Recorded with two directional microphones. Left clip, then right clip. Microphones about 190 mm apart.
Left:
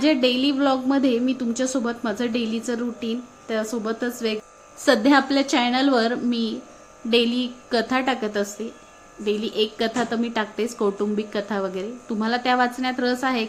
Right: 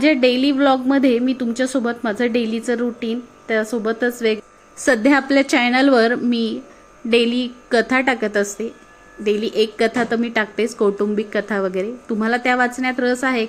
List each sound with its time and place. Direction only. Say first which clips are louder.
0.0 s a woman's voice: right 4 dB; 15° right (ahead or behind)